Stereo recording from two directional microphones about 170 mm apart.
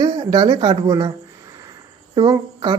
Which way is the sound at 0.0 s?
25° right (ahead or behind).